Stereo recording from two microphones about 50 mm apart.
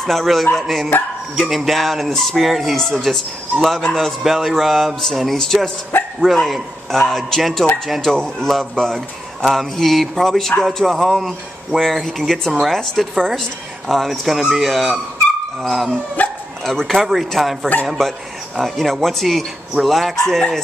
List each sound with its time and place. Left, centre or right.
0.0 s a man's voice: centre
2.7 s speech: centre
4.2 s a man's voice: centre
5.9 s dog: left
6.3 s a man's voice: centre
16.2 s dog: left
16.6 s a man's voice: centre